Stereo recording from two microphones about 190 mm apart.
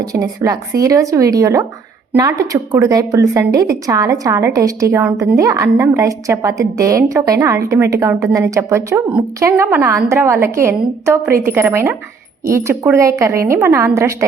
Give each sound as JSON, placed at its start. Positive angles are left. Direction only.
{"t": 0.1, "sound": "a woman's voice", "side_deg": -15}